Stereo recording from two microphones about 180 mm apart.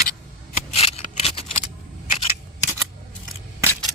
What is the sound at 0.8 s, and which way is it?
Scissors, 35° left (ahead or behind).